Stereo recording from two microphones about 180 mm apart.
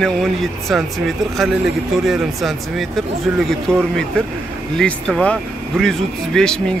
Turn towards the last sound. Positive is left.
turn(degrees=5)  # may be behind; listen again after turning